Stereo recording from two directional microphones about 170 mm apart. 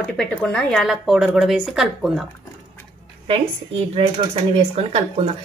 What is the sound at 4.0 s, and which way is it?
A woman's voice, 35° right (ahead or behind).